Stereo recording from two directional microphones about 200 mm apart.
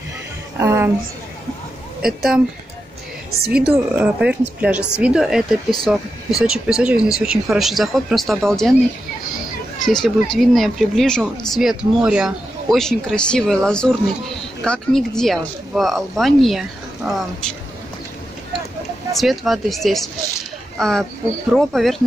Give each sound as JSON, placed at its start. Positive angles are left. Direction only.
{"t": 0.6, "sound": "a woman's voice", "side_deg": -10}
{"t": 2.0, "sound": "speech", "side_deg": -5}
{"t": 3.3, "sound": "a woman's voice", "side_deg": -50}
{"t": 3.6, "sound": "speech", "side_deg": -5}
{"t": 9.8, "sound": "speech", "side_deg": 0}
{"t": 19.1, "sound": "speech", "side_deg": 0}